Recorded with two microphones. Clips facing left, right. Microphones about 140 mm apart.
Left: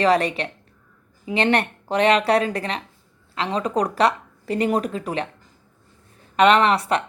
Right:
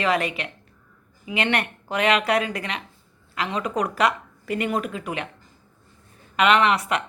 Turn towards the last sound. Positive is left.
turn(degrees=35)  # may be behind; listen again after turning